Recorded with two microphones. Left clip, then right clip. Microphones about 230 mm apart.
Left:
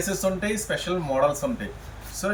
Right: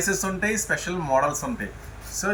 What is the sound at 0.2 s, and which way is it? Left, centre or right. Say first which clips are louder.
Speech: even; centre.